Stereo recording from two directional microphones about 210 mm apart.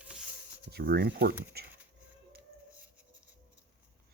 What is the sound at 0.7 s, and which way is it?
Speech, 50° right (ahead or behind).